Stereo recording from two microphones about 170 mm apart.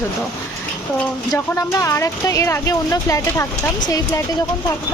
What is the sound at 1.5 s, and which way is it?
Speech, 15° left (ahead or behind).